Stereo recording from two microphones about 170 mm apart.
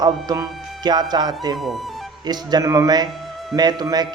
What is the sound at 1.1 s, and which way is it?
Speech, 25° right (ahead or behind).